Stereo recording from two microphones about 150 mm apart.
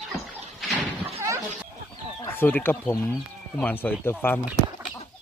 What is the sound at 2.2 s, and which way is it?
Speech, 15° left (ahead or behind).